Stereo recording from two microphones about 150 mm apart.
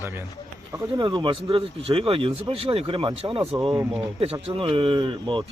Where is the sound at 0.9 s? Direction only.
30° right (ahead or behind).